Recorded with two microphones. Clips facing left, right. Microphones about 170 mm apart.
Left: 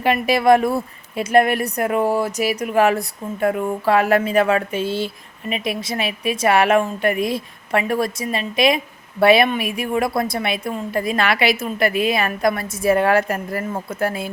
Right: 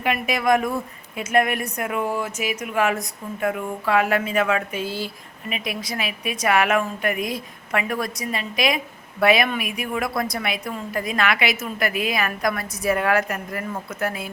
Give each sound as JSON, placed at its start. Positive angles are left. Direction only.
{"t": 0.0, "sound": "a woman's voice", "side_deg": 30}